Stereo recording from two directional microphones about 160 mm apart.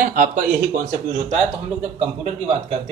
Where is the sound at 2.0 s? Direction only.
40° right (ahead or behind).